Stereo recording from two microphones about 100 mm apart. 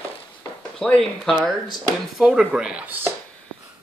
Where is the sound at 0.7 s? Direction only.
5° left (ahead or behind); by 3.1 s 15° right (ahead or behind).